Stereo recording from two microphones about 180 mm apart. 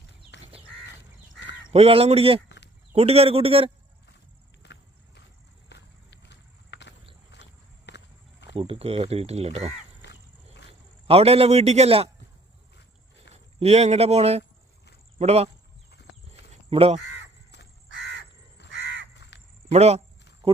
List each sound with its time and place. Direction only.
0.3 s crow: 75° left (ahead or behind)
1.7 s speech: 35° right (ahead or behind)
4.6 s a sound: 70° left (ahead or behind)
5.6 s walk: 70° left (ahead or behind)
8.5 s speech: 30° right (ahead or behind)
10.0 s wild animals: 75° left (ahead or behind)
11.0 s speech: 35° right (ahead or behind)
13.3 s speech: 35° right (ahead or behind)
16.3 s a sound: 35° right (ahead or behind)
17.8 s crow: 90° right
19.3 s a sound: 75° left (ahead or behind)
19.7 s speech: 35° right (ahead or behind)